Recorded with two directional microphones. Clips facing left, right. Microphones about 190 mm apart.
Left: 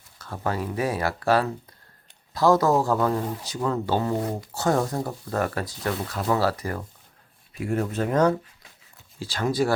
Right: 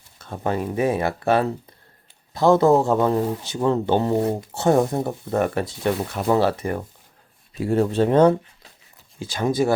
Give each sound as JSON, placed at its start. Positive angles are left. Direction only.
{"t": 0.2, "sound": "speech", "side_deg": -20}